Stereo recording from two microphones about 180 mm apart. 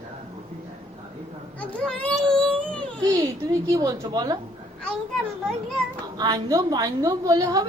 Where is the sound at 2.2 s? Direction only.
5° left (ahead or behind).